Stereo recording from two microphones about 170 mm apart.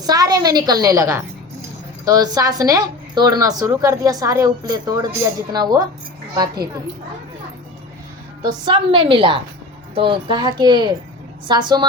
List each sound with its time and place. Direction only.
0.0 s a woman's voice: 20° right (ahead or behind)
8.4 s a woman's voice: 25° right (ahead or behind)